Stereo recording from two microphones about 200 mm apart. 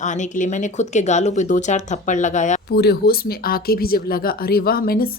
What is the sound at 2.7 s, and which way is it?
Speech, 50° left (ahead or behind).